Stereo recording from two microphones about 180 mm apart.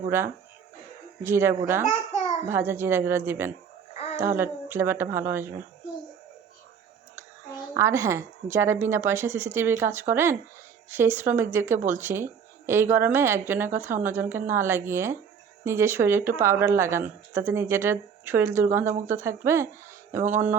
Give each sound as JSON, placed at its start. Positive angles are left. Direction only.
{"t": 0.1, "sound": "speech", "side_deg": -10}
{"t": 1.8, "sound": "babbling", "side_deg": 40}
{"t": 2.5, "sound": "speech", "side_deg": -15}
{"t": 3.9, "sound": "a sound", "side_deg": 35}
{"t": 4.2, "sound": "speech", "side_deg": -15}
{"t": 7.8, "sound": "speech", "side_deg": -15}